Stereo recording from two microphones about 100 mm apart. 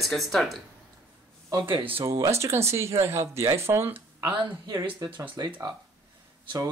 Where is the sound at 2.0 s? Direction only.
30° right (ahead or behind).